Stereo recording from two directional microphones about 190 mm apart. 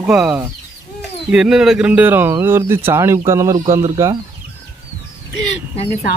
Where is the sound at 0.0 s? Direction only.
Centre (ahead or behind); by 4.2 s 20° right (ahead or behind).